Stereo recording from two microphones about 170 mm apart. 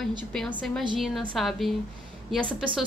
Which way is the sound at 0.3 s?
5° left (ahead or behind).